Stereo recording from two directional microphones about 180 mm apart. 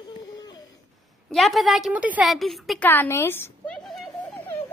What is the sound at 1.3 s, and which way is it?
A woman's voice, centre (ahead or behind).